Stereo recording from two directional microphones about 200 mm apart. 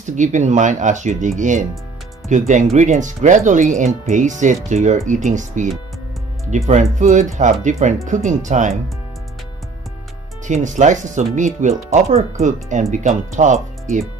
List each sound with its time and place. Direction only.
0.0 s speech: 40° right (ahead or behind)
6.7 s speech: 35° right (ahead or behind)
10.4 s speech: 35° right (ahead or behind)